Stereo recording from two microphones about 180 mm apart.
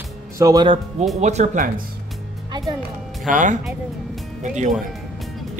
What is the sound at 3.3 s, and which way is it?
Speech, 45° right (ahead or behind).